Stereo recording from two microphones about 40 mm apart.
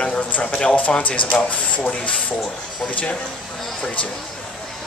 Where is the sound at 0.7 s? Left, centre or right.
Left.